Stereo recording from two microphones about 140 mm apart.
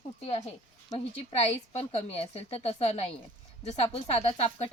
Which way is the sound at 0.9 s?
45° left (ahead or behind).